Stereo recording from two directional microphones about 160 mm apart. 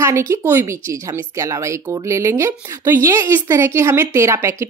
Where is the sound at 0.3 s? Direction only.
15° right (ahead or behind).